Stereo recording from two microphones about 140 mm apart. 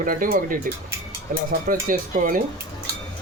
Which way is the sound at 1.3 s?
90° right.